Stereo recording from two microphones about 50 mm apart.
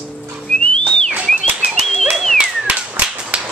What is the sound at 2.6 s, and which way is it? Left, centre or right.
Whip, right.